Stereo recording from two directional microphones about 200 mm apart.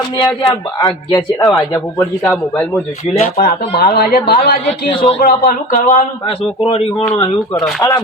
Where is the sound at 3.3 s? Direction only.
50° left (ahead or behind).